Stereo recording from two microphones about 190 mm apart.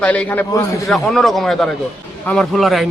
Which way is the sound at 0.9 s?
Centre (ahead or behind).